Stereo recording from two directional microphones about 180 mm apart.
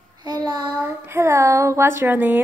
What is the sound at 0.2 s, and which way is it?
Child singing, 20° right (ahead or behind).